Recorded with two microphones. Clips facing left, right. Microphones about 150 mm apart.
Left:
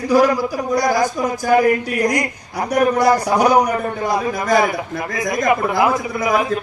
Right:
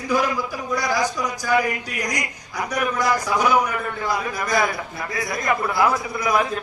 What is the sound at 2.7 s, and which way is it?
A man's voice, 35° left (ahead or behind).